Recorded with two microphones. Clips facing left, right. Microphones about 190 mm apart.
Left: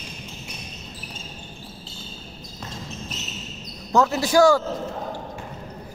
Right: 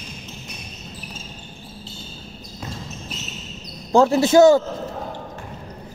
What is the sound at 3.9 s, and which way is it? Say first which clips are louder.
Speech: right 5 dB; 30° right (ahead or behind).